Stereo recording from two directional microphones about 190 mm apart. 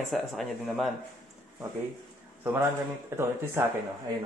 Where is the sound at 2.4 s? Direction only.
10° right (ahead or behind).